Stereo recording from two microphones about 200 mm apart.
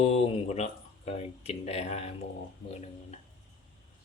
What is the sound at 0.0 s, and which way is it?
Speech, 30° left (ahead or behind).